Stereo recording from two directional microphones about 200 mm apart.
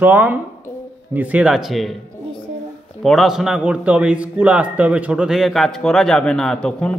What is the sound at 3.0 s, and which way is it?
A man's voice, centre (ahead or behind).